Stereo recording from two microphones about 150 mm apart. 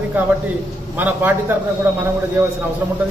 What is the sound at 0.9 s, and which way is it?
Speech, 10° right (ahead or behind).